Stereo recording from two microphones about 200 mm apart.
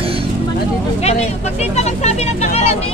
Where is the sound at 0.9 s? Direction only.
35° left (ahead or behind).